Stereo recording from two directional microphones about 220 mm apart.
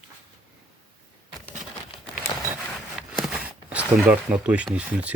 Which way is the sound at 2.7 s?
Centre (ahead or behind).